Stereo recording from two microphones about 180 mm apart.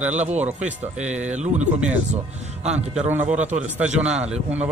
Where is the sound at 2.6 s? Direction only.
5° right (ahead or behind).